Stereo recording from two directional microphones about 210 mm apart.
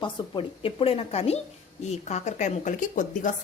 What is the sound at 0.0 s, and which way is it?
A woman's voice, 25° left (ahead or behind).